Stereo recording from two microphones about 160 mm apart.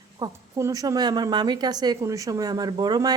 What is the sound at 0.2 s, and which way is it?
A woman's voice, 20° right (ahead or behind).